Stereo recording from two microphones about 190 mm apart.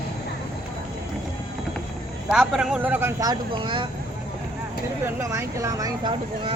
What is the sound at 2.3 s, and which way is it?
Speech, 5° right (ahead or behind).